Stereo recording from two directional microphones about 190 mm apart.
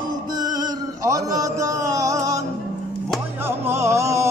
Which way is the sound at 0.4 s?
20° right (ahead or behind).